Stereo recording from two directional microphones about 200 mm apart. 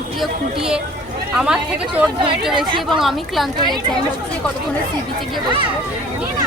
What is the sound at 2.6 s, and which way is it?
Speech, 25° right (ahead or behind).